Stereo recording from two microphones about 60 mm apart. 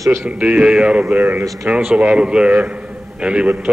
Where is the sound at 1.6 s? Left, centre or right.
Centre.